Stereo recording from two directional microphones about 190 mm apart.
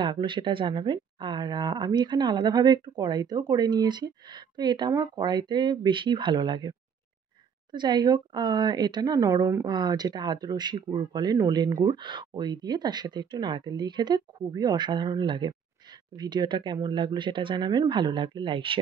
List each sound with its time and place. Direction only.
0.0 s speech: 25° right (ahead or behind)
7.7 s speech: 25° right (ahead or behind)